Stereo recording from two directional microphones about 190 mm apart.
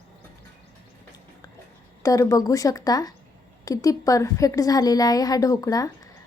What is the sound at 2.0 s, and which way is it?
A woman's voice, 15° left (ahead or behind).